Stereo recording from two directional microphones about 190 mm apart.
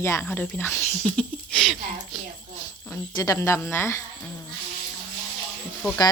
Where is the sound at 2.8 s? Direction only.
15° left (ahead or behind).